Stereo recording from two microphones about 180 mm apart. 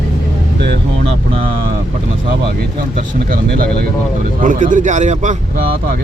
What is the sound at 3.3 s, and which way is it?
A man's voice, 55° right (ahead or behind).